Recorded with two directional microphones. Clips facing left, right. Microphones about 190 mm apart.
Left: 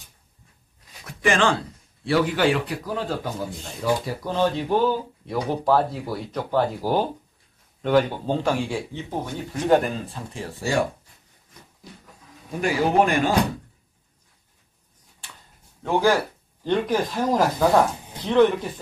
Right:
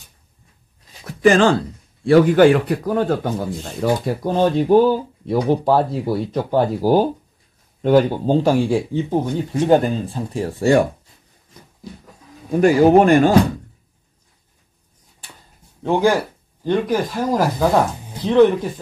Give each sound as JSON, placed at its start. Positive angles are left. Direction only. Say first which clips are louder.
{"t": 1.2, "sound": "speech", "louder": "right 8 dB", "side_deg": -40}
{"t": 12.4, "sound": "speech", "louder": "right 10 dB", "side_deg": -45}
{"t": 15.8, "sound": "speech", "louder": "right 4 dB", "side_deg": -15}